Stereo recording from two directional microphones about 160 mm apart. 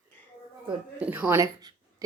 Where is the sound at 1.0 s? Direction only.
10° right (ahead or behind).